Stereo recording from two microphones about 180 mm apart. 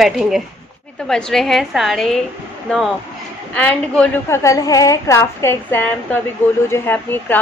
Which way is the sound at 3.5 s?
5° left (ahead or behind).